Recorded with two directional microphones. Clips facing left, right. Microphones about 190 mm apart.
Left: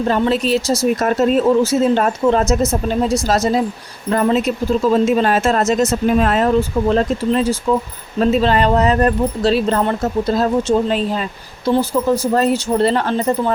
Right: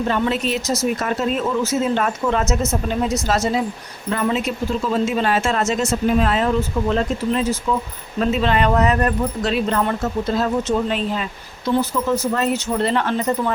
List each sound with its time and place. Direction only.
0.1 s speech: 35° left (ahead or behind)
6.6 s speech: 35° left (ahead or behind)